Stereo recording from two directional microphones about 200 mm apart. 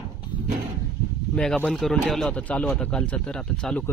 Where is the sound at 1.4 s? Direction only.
5° left (ahead or behind).